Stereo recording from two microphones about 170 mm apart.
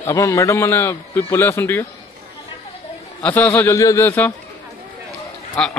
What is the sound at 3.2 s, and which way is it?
A man's voice, 15° left (ahead or behind).